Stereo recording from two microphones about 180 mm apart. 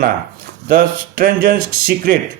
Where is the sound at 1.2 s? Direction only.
50° right (ahead or behind).